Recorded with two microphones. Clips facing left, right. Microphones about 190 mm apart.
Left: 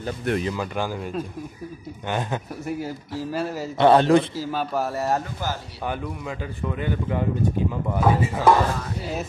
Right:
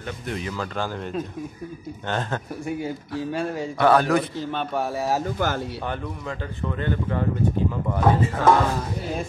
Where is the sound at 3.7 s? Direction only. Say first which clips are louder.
Left 3 dB; 25° left (ahead or behind).